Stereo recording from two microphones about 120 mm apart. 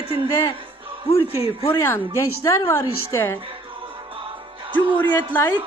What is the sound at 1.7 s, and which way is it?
A woman's voice, 20° left (ahead or behind).